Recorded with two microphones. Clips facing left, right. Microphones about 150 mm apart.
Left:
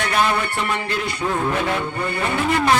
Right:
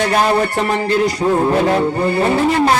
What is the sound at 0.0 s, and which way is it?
Music, 35° right (ahead or behind).